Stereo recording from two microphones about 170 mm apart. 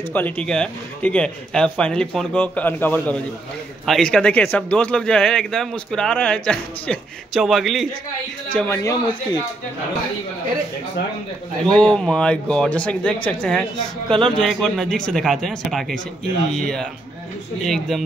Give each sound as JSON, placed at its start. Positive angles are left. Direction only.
{"t": 0.1, "sound": "a man's voice", "side_deg": 10}
{"t": 8.5, "sound": "speech", "side_deg": 15}
{"t": 11.6, "sound": "a man's voice", "side_deg": 5}
{"t": 14.0, "sound": "speech", "side_deg": -30}
{"t": 14.3, "sound": "a man's voice", "side_deg": 0}
{"t": 17.6, "sound": "a man's voice", "side_deg": 0}